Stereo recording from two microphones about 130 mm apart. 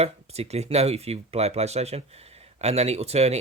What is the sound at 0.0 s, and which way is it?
Speech, 55° right (ahead or behind).